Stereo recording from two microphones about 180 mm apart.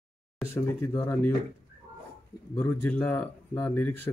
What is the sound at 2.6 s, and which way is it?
Speech, 10° left (ahead or behind).